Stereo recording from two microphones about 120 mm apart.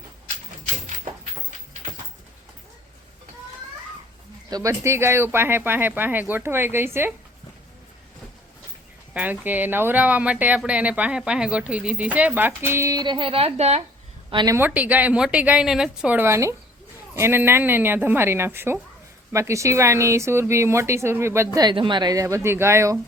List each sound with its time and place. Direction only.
4.4 s speech: 30° right (ahead or behind)
9.1 s speech: 15° right (ahead or behind); by 13.8 s 65° right (ahead or behind)
14.4 s speech: 25° right (ahead or behind)
14.7 s speech: 10° right (ahead or behind)